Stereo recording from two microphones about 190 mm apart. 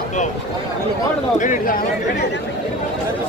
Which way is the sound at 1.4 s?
45° left (ahead or behind).